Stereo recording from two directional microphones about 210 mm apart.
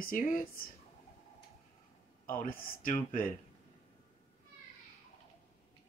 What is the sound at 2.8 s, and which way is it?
Speech, 40° left (ahead or behind).